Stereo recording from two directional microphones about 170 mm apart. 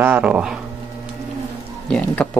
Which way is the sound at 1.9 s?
10° left (ahead or behind).